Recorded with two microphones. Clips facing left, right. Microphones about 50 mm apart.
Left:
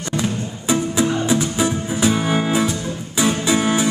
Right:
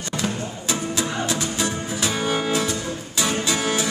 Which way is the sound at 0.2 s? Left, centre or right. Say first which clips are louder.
Left 3 dB; centre.